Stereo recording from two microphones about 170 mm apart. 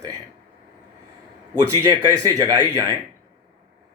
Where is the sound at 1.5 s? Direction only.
15° right (ahead or behind).